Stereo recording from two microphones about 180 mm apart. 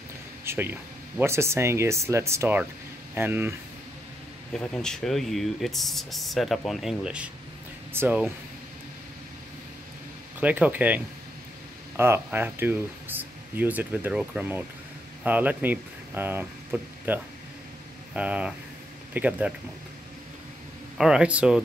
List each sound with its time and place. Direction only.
0.5 s speech: 10° right (ahead or behind)
4.6 s speech: 5° left (ahead or behind)
10.4 s speech: 10° right (ahead or behind)
12.0 s speech: 15° right (ahead or behind)
21.0 s speech: 5° right (ahead or behind)